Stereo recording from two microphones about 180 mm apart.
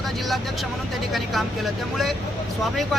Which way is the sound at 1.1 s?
Centre (ahead or behind).